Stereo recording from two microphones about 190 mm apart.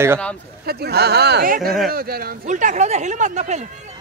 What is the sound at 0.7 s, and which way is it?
Speech, 55° right (ahead or behind).